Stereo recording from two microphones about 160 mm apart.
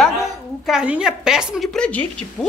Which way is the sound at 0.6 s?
5° right (ahead or behind).